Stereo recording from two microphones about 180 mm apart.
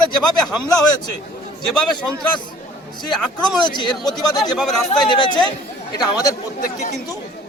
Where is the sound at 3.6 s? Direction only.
25° left (ahead or behind).